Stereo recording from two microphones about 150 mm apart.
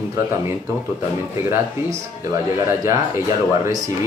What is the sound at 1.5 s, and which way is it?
Speech, 20° right (ahead or behind).